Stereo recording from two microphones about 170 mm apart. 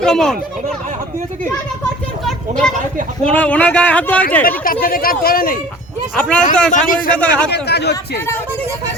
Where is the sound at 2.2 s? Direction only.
5° left (ahead or behind).